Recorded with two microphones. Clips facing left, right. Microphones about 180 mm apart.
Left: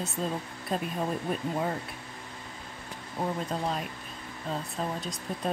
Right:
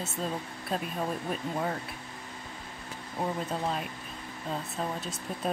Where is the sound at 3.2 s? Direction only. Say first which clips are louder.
Left 1 dB; centre (ahead or behind).